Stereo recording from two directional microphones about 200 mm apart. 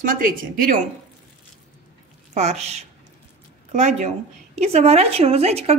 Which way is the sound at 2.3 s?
35° right (ahead or behind).